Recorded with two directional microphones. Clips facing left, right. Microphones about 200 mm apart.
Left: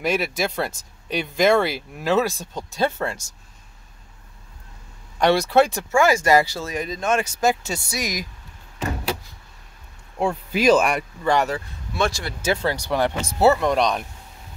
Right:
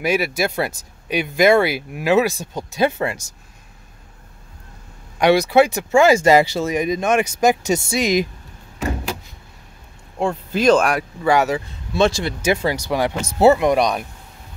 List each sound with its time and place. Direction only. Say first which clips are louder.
0.0 s speech: right 3 dB; 5° right (ahead or behind)
5.2 s speech: right 3 dB; 10° right (ahead or behind)
10.1 s speech: right 2 dB; 5° left (ahead or behind)
11.9 s speech: right 6 dB; 25° right (ahead or behind)
12.4 s speech: even; 15° right (ahead or behind)